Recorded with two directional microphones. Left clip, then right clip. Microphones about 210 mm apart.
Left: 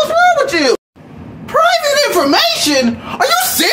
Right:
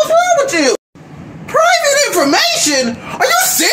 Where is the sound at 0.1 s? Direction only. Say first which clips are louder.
Even; 10° left (ahead or behind).